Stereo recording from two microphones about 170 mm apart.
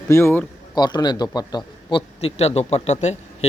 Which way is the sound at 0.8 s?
25° left (ahead or behind).